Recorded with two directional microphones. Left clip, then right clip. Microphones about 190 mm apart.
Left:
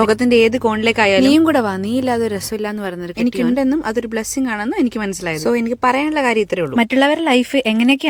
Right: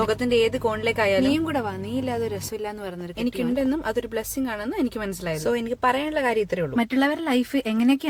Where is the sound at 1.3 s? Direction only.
50° left (ahead or behind).